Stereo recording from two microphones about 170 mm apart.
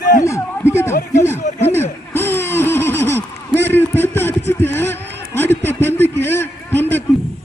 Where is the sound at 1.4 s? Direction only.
45° left (ahead or behind).